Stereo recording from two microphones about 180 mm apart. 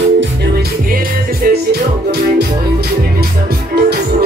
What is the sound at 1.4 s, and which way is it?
Music, 65° right (ahead or behind).